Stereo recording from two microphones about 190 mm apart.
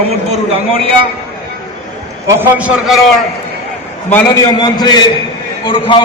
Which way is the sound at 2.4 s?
5° right (ahead or behind).